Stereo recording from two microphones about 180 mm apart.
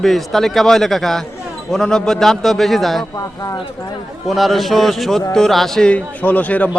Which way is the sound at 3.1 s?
20° left (ahead or behind).